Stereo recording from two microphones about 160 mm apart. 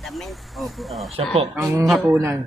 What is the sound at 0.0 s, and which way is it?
Speech, centre (ahead or behind).